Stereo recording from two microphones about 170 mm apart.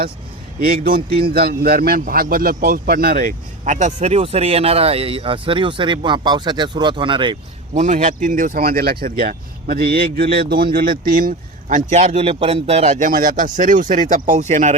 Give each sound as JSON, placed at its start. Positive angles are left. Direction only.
{"t": 0.6, "sound": "speech", "side_deg": -60}
{"t": 7.7, "sound": "speech", "side_deg": -45}